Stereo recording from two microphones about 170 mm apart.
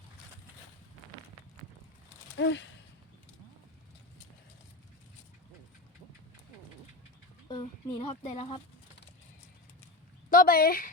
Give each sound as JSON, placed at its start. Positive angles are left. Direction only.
{"t": 2.4, "sound": "speech", "side_deg": 90}
{"t": 7.5, "sound": "speech", "side_deg": 30}
{"t": 10.2, "sound": "speech", "side_deg": 55}